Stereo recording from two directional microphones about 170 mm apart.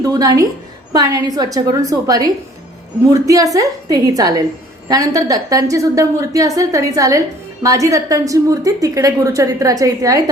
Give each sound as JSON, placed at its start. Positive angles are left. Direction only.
{"t": 0.0, "sound": "a woman's voice", "side_deg": -20}